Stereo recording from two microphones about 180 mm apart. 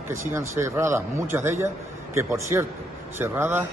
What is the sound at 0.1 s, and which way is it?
A man's voice, 15° right (ahead or behind).